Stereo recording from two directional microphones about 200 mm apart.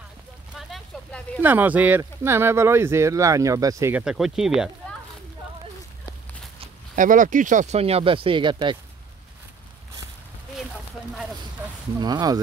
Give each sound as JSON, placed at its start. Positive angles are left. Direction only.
{"t": 0.6, "sound": "a sound", "side_deg": 0}
{"t": 1.4, "sound": "speech", "side_deg": -10}
{"t": 6.6, "sound": "speech", "side_deg": -40}
{"t": 12.0, "sound": "speech", "side_deg": -20}